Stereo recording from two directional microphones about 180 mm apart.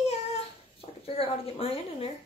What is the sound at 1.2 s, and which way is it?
Speech, 30° left (ahead or behind).